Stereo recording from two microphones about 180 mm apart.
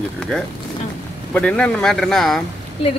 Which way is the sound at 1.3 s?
5° left (ahead or behind).